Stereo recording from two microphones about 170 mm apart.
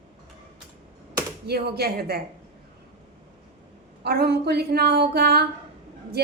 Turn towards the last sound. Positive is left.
turn(degrees=-70)  # may be behind; listen again after turning